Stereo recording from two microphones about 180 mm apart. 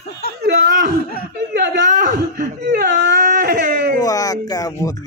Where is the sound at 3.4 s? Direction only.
65° right (ahead or behind).